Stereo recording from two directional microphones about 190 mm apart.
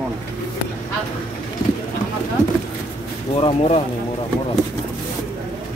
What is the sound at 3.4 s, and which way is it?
Speech, 30° left (ahead or behind).